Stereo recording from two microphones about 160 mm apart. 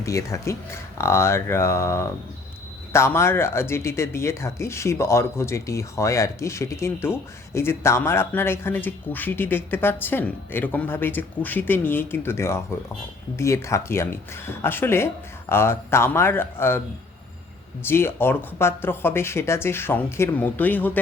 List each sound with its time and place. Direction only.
0.0 s speech: 20° left (ahead or behind)
17.8 s speech: 15° left (ahead or behind)